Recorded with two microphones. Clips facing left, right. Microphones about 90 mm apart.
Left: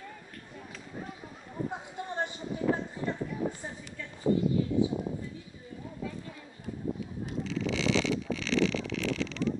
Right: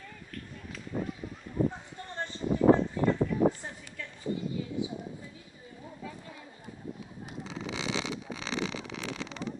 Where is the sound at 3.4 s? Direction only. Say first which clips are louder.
Right 8 dB; 70° right (ahead or behind).